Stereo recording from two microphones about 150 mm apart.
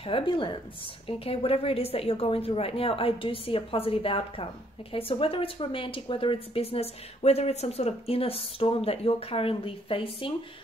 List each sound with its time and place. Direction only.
0.0 s speech: 35° left (ahead or behind)